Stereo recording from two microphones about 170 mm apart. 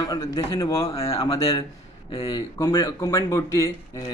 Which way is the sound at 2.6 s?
20° left (ahead or behind).